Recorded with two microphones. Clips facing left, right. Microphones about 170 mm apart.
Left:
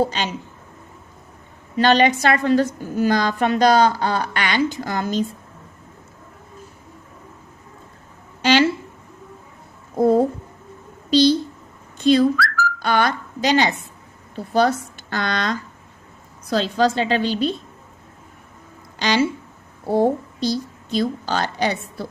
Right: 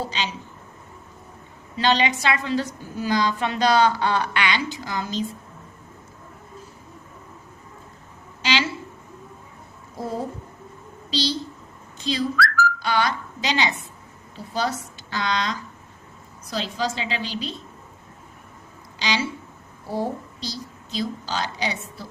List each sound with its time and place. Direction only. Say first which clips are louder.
0.0 s a woman's voice: left 7 dB; 50° left (ahead or behind)
1.8 s a woman's voice: left 6 dB; 50° left (ahead or behind)
9.9 s a woman's voice: left 13 dB; 55° left (ahead or behind)
18.9 s speech: left 7 dB; 55° left (ahead or behind)